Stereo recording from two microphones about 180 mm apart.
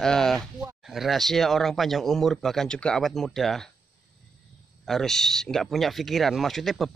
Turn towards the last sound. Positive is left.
turn(degrees=0)  # may be behind; listen again after turning